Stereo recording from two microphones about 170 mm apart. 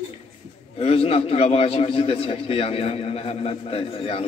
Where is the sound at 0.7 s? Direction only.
35° left (ahead or behind).